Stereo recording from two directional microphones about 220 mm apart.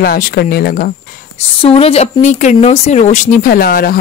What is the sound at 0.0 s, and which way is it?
Speech, 40° left (ahead or behind).